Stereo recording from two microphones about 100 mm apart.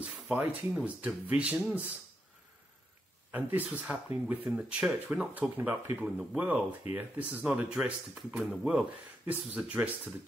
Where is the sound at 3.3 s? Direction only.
15° right (ahead or behind).